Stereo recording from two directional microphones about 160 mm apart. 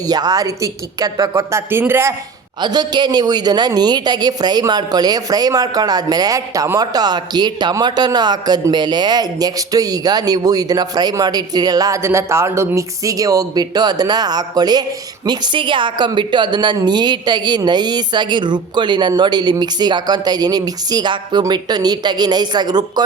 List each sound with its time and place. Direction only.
0.1 s a woman's voice: 25° right (ahead or behind)
2.6 s a woman's voice: 25° right (ahead or behind)